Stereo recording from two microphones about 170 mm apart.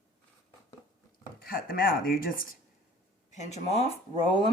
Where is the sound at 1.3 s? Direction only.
60° left (ahead or behind).